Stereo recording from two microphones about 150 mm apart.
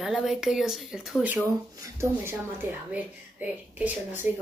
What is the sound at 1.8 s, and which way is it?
A woman's voice, 15° right (ahead or behind).